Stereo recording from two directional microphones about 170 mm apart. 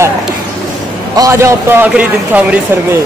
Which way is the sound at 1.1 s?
20° right (ahead or behind).